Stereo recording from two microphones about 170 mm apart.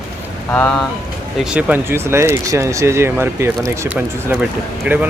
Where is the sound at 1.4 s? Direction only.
5° right (ahead or behind).